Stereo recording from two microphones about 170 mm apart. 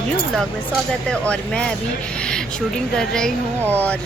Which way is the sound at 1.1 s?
5° left (ahead or behind).